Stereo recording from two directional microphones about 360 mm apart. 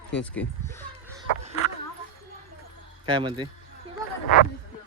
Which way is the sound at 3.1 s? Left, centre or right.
Centre.